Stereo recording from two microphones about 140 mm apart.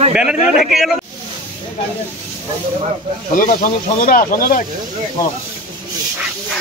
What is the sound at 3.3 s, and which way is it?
Speech, 80° left.